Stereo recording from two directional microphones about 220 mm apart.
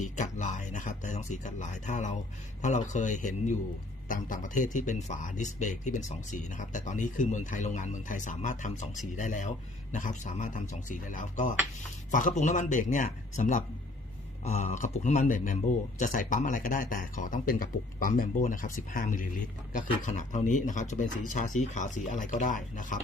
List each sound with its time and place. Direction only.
0.2 s speech: 35° left (ahead or behind)